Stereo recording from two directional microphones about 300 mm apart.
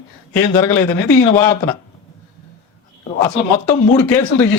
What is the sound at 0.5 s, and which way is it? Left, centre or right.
Speech, centre.